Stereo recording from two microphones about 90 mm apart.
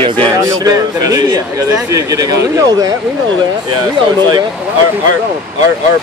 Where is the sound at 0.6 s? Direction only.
45° right (ahead or behind).